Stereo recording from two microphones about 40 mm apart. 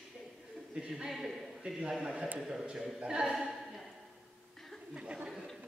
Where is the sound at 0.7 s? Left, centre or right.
Centre.